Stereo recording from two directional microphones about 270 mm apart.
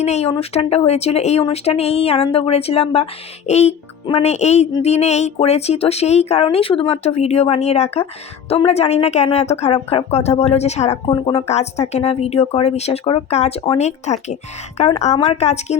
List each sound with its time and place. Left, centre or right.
0.0 s speech: left